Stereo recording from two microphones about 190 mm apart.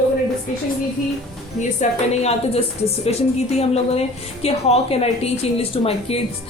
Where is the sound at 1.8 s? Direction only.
35° left (ahead or behind).